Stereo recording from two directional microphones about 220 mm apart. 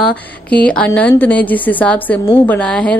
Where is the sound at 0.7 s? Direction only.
5° left (ahead or behind).